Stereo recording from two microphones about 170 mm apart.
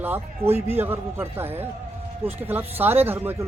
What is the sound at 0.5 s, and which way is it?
Speech, 35° right (ahead or behind).